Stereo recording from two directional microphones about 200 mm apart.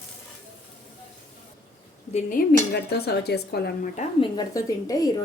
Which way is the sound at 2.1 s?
45° left (ahead or behind).